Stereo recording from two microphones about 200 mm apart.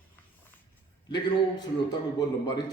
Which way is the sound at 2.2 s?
20° left (ahead or behind).